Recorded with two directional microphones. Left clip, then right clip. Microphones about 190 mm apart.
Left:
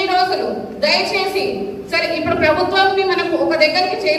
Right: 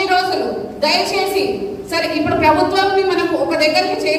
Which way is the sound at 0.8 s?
10° right (ahead or behind).